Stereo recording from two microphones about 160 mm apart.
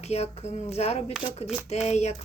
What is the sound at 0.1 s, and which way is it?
Speech, 40° left (ahead or behind).